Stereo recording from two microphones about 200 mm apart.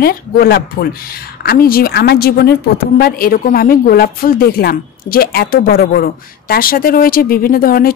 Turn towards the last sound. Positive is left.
turn(degrees=45)  # may be behind; listen again after turning